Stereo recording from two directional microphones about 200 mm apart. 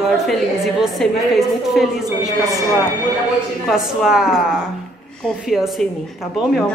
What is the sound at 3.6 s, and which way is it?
Speech, centre (ahead or behind).